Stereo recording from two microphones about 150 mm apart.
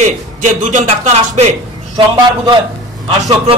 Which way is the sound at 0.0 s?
55° right (ahead or behind).